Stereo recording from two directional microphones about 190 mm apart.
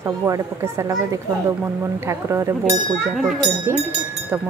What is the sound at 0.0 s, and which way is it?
Speech, 15° right (ahead or behind).